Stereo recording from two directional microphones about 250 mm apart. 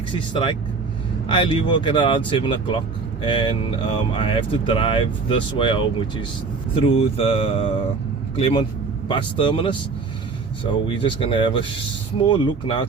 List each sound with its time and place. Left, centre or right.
0.1 s speech: centre